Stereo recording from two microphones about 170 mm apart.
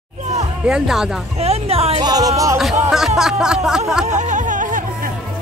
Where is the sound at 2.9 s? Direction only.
Centre (ahead or behind).